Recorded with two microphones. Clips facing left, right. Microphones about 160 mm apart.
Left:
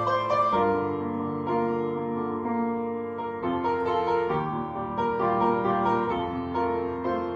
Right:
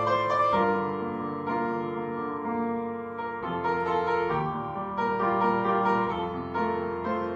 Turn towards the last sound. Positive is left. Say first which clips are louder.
# left 1 dB
turn(degrees=0)  # may be behind; listen again after turning